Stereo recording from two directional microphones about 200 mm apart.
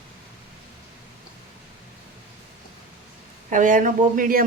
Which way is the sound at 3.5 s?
40° right (ahead or behind).